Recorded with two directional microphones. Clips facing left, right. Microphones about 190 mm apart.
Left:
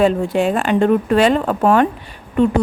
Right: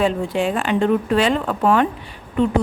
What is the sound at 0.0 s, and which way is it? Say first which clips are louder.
A woman's voice: left 4 dB; 45° left (ahead or behind).